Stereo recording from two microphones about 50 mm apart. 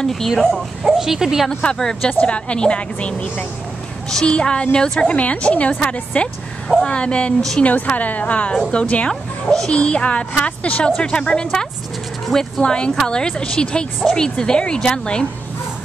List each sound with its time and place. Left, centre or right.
0.0 s a woman's voice: centre
0.8 s speech: centre
1.5 s a woman's voice: left
1.8 s a woman's voice: centre
2.2 s a woman's voice: left
5.0 s a woman's voice: left
12.3 s speech: centre
12.6 s a woman's voice: centre